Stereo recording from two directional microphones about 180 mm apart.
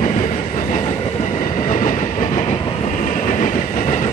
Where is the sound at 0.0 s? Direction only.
40° left (ahead or behind).